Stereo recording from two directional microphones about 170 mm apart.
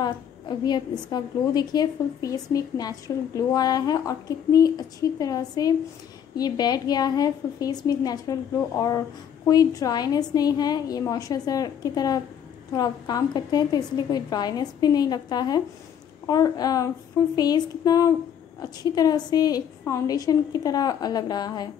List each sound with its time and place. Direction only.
0.0 s a woman's voice: 25° left (ahead or behind)